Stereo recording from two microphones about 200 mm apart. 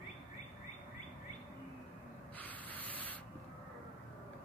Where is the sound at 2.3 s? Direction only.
10° left (ahead or behind).